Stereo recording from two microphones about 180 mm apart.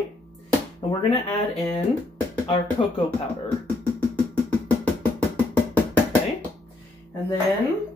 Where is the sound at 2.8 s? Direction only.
30° left (ahead or behind).